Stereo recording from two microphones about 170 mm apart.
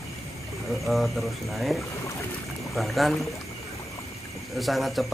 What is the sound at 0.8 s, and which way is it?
Speech, centre (ahead or behind).